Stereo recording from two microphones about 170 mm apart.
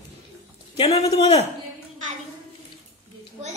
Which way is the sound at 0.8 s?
35° left (ahead or behind).